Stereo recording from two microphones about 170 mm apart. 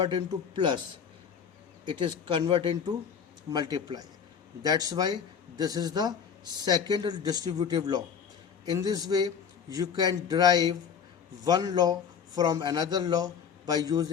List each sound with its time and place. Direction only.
0.0 s speech: 25° right (ahead or behind)
1.8 s speech: 30° right (ahead or behind)